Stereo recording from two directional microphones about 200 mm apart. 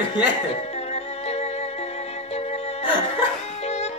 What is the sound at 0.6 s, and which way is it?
Music, 35° left (ahead or behind).